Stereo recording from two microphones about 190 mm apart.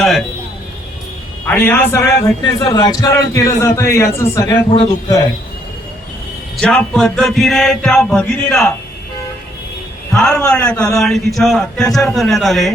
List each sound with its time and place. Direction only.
0.0 s a sound: centre (ahead or behind)
1.5 s a man's voice: 10° left (ahead or behind)
6.6 s a man's voice: 5° left (ahead or behind)
10.2 s a man's voice: 5° left (ahead or behind)